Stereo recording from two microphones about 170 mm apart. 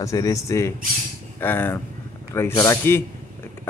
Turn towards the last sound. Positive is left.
turn(degrees=15)  # may be behind; listen again after turning